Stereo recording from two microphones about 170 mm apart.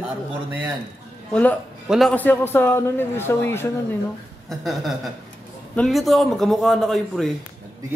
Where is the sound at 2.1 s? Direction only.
10° left (ahead or behind).